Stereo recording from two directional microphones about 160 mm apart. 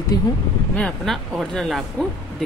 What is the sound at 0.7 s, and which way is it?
Speech, 5° left (ahead or behind).